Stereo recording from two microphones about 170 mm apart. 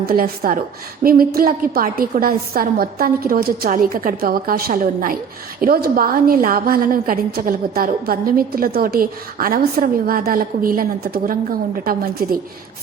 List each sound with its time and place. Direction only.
0.0 s a woman's voice: 60° right (ahead or behind)